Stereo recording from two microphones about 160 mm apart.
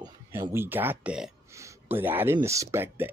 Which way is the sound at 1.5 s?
20° right (ahead or behind).